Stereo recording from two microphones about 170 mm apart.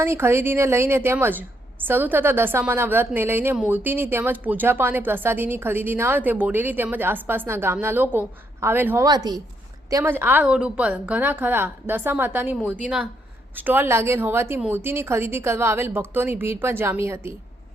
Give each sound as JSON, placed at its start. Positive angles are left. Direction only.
{"t": 0.0, "sound": "a woman's voice", "side_deg": -15}
{"t": 9.0, "sound": "a woman's voice", "side_deg": -25}